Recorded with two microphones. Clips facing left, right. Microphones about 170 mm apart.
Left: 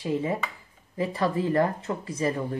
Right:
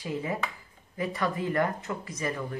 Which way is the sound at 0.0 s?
25° left (ahead or behind).